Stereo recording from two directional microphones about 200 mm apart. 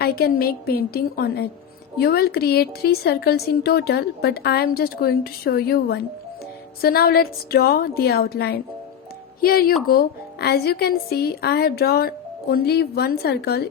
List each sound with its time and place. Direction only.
0.0 s a woman's voice: 50° left (ahead or behind)